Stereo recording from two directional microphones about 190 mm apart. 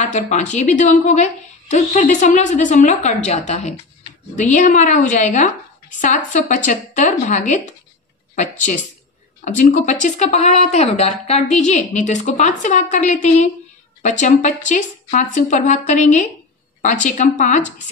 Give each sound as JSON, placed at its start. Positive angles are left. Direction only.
{"t": 0.0, "sound": "a woman's voice", "side_deg": 40}
{"t": 9.4, "sound": "a woman's voice", "side_deg": 40}